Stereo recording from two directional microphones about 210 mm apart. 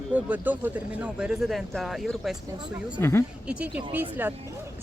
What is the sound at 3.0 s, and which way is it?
Speech, 10° left (ahead or behind).